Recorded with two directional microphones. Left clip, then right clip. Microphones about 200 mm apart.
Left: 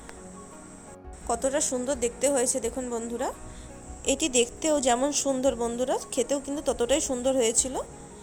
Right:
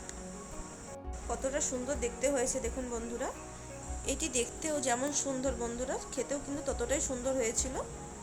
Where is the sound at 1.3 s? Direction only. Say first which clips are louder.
Left 8 dB; 25° left (ahead or behind).